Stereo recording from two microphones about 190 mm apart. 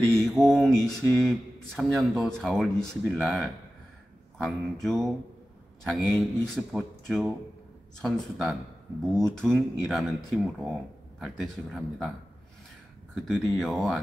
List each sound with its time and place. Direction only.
0.1 s speech: centre (ahead or behind)
13.3 s speech: 5° left (ahead or behind)